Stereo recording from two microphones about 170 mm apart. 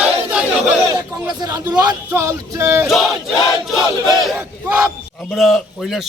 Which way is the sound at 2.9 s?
Centre (ahead or behind).